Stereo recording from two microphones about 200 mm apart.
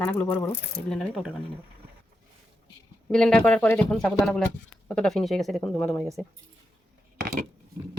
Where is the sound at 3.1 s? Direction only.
5° left (ahead or behind).